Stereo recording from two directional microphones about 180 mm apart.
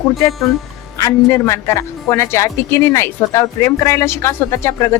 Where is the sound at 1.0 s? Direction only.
15° left (ahead or behind).